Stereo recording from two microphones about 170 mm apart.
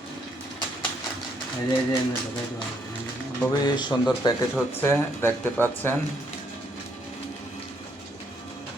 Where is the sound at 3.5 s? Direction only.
25° left (ahead or behind).